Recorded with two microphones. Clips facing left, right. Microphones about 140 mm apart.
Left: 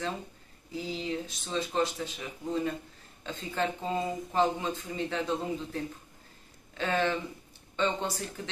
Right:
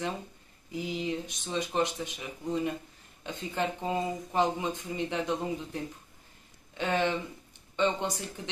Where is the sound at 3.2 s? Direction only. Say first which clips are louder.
Even; 15° right (ahead or behind).